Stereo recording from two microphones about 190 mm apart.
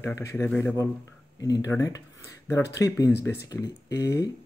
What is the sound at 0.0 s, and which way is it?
Speech, 15° left (ahead or behind).